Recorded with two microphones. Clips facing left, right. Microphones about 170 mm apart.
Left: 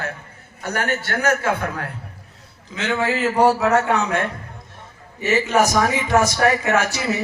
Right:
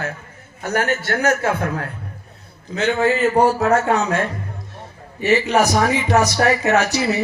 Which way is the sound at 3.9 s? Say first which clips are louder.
Right 2 dB; 60° left (ahead or behind).